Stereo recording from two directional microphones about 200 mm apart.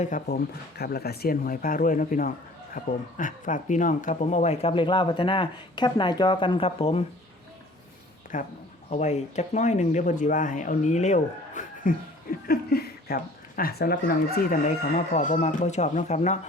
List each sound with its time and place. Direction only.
0.0 s speech: 45° left (ahead or behind)
8.3 s speech: 40° left (ahead or behind)
12.5 s speech: 50° left (ahead or behind); by 16.4 s 35° left (ahead or behind)